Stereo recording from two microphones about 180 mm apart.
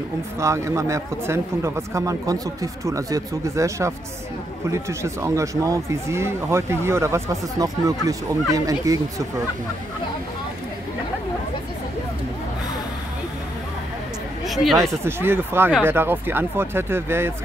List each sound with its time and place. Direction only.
0.4 s speech: 15° right (ahead or behind)
14.5 s speech: centre (ahead or behind)
15.0 s speech: 15° right (ahead or behind)